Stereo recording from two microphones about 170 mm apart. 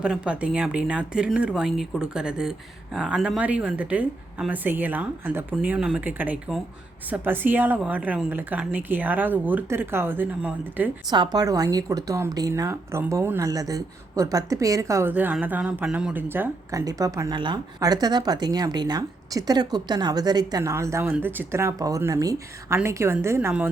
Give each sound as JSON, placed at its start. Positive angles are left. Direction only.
{"t": 0.0, "sound": "speech", "side_deg": -5}
{"t": 11.1, "sound": "a woman's voice", "side_deg": -25}